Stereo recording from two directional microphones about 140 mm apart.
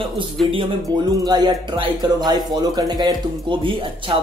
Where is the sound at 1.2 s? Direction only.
30° right (ahead or behind).